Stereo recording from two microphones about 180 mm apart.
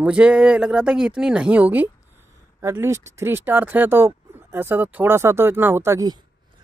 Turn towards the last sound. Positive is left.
turn(degrees=-20)  # may be behind; listen again after turning